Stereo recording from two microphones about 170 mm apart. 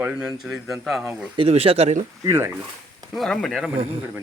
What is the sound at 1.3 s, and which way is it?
Speech, 35° right (ahead or behind).